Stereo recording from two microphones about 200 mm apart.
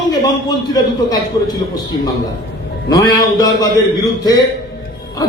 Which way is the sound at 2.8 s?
20° left (ahead or behind).